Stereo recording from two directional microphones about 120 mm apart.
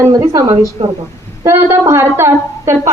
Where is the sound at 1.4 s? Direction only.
25° right (ahead or behind).